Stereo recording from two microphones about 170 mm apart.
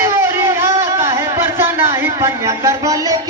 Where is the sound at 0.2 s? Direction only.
15° right (ahead or behind).